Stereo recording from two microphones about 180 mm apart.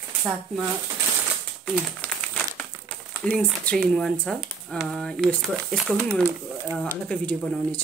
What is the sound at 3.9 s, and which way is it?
Speech, 5° left (ahead or behind).